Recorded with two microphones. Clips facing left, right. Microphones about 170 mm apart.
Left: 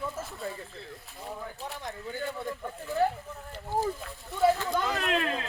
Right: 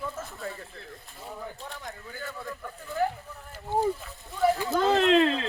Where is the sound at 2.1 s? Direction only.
25° left (ahead or behind).